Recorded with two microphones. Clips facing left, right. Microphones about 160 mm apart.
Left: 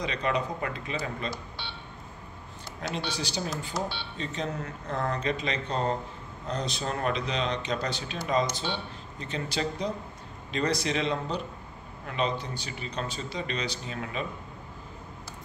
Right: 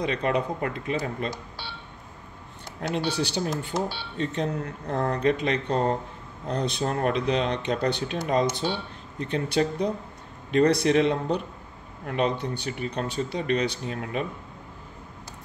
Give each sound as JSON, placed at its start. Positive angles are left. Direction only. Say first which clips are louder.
{"t": 0.0, "sound": "speech", "louder": "right 4 dB", "side_deg": -50}
{"t": 3.1, "sound": "speech", "louder": "right 6 dB", "side_deg": -65}